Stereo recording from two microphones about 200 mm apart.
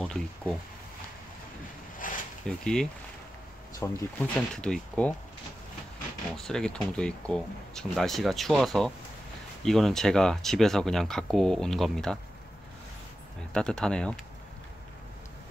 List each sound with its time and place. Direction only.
0.0 s speech: 5° left (ahead or behind)
2.0 s a sound: 40° left (ahead or behind)
2.6 s speech: 5° left (ahead or behind)
6.3 s speech: 5° left (ahead or behind)
13.5 s speech: 5° left (ahead or behind)